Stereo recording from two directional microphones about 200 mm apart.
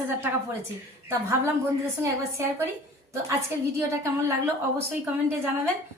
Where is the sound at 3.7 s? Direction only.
10° right (ahead or behind).